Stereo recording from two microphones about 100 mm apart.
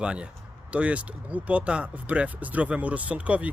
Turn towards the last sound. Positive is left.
turn(degrees=-15)  # may be behind; listen again after turning